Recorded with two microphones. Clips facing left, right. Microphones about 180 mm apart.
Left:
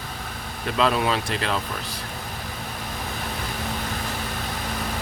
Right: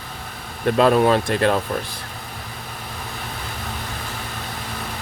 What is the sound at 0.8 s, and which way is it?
Speech, 45° right (ahead or behind).